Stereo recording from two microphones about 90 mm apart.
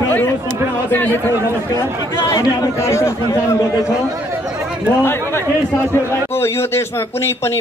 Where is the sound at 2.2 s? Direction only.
40° left (ahead or behind).